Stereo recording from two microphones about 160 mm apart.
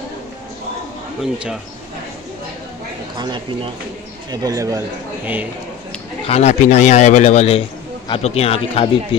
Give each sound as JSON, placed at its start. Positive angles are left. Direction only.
{"t": 1.2, "sound": "speech", "side_deg": 0}
{"t": 3.2, "sound": "a man's voice", "side_deg": -25}
{"t": 6.2, "sound": "speech", "side_deg": 40}